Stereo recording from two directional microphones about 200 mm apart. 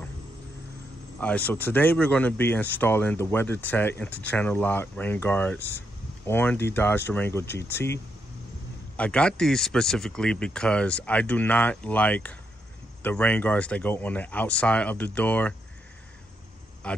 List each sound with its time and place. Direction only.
1.2 s speech: 10° left (ahead or behind)
16.8 s speech: 5° left (ahead or behind)